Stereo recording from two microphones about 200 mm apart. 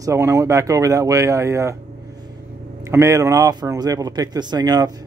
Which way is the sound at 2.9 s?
15° right (ahead or behind).